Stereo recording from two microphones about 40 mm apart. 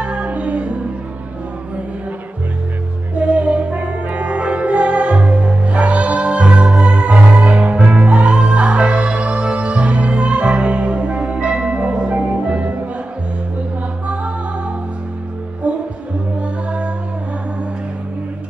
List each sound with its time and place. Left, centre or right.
0.0 s music: right
3.2 s music: right
14.0 s music: right
15.6 s music: right